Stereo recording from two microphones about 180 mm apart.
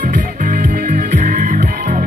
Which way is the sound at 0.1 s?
45° right (ahead or behind).